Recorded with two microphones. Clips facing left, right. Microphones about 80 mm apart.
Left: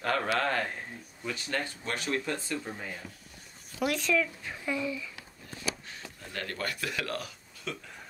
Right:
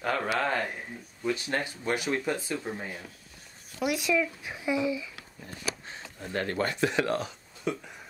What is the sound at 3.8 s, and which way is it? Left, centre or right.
Speech, centre.